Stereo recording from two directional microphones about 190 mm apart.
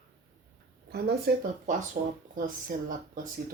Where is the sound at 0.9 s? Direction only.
60° right (ahead or behind).